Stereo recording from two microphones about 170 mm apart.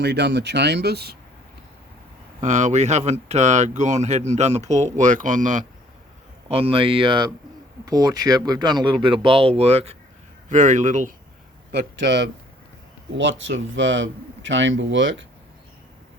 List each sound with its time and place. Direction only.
0.0 s speech: 80° right
2.4 s speech: 45° right (ahead or behind)
6.5 s speech: 35° right (ahead or behind)
11.7 s speech: 80° right